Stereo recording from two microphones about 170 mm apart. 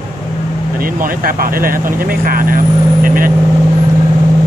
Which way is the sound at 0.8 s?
55° right (ahead or behind).